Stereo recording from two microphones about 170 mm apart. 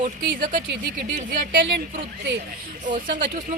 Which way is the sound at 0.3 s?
55° right (ahead or behind).